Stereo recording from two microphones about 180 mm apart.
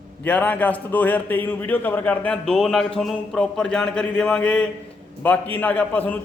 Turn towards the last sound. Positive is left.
turn(degrees=10)  # may be behind; listen again after turning